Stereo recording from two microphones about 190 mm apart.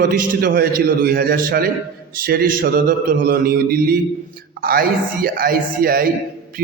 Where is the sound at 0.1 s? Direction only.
50° right (ahead or behind).